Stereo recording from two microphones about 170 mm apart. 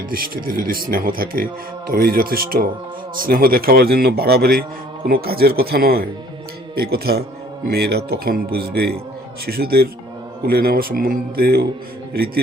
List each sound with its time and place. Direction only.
0.1 s a man's voice: 60° right (ahead or behind)